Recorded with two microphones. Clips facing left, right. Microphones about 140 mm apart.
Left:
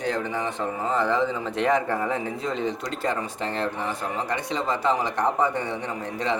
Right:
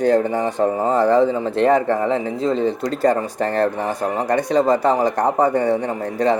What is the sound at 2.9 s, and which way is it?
Speech, 45° right (ahead or behind).